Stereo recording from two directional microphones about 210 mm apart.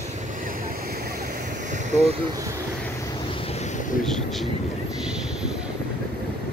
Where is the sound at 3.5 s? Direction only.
30° left (ahead or behind).